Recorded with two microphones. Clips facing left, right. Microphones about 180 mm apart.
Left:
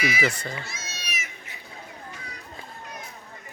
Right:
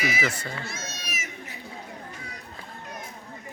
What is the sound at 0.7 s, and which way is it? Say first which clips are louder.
Cat: right 2 dB; 55° right (ahead or behind).